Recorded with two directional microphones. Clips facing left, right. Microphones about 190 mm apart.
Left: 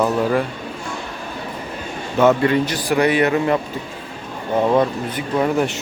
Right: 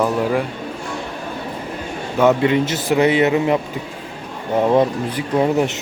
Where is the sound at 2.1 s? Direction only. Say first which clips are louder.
Even; 10° right (ahead or behind).